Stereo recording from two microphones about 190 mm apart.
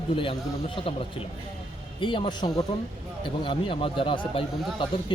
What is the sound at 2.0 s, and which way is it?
Speech, 25° left (ahead or behind).